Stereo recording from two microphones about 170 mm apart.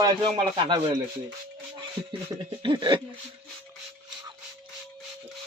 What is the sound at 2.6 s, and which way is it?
Speech, 30° right (ahead or behind).